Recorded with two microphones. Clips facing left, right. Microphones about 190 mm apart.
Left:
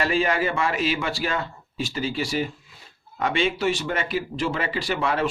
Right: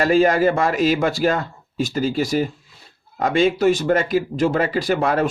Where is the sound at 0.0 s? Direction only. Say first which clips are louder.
Right 7 dB; 40° right (ahead or behind).